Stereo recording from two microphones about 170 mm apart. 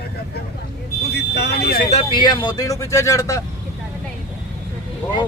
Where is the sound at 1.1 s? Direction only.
75° left (ahead or behind).